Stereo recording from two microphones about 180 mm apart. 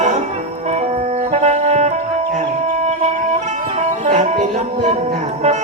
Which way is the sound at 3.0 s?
40° right (ahead or behind).